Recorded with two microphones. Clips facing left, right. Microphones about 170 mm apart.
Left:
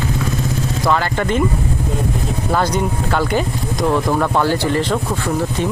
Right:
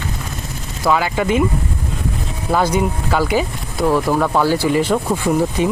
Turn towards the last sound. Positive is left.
turn(degrees=-10)  # may be behind; listen again after turning